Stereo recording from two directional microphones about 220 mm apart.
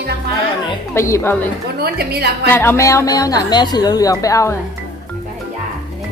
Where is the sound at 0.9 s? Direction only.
15° left (ahead or behind).